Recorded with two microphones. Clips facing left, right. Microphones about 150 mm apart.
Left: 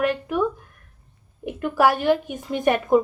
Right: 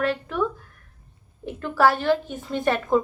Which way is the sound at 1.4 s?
15° left (ahead or behind).